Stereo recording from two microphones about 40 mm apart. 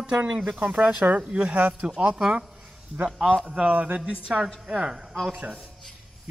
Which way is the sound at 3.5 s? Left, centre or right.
Right.